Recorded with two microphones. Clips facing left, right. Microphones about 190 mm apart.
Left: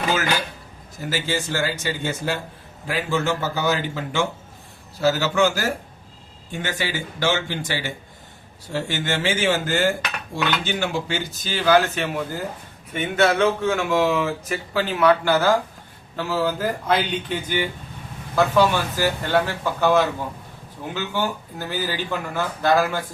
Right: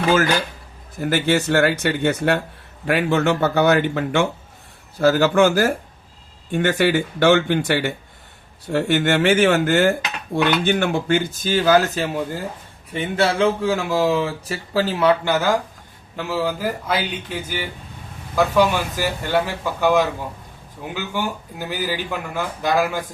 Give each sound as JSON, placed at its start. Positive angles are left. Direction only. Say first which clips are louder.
{"t": 0.1, "sound": "a man's voice", "louder": "right 7 dB", "side_deg": -50}
{"t": 15.2, "sound": "speech", "louder": "left 1 dB", "side_deg": -15}